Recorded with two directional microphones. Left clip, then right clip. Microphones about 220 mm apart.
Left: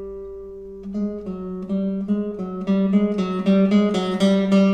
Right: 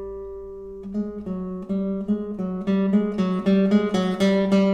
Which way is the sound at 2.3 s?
25° right (ahead or behind).